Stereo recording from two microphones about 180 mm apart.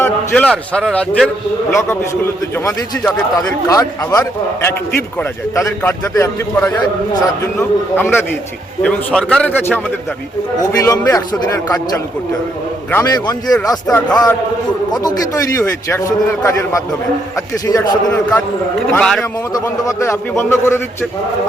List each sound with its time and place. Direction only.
0.0 s a sound: 10° left (ahead or behind)
0.5 s a man's voice: 5° left (ahead or behind)
1.7 s a man's voice: 15° left (ahead or behind)
7.9 s a man's voice: 10° left (ahead or behind)
18.9 s a man's voice: centre (ahead or behind)
19.5 s a man's voice: 20° left (ahead or behind)